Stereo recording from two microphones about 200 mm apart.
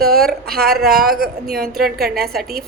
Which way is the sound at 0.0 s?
50° right (ahead or behind).